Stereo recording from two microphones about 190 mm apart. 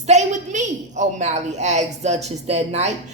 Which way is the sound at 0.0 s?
35° right (ahead or behind).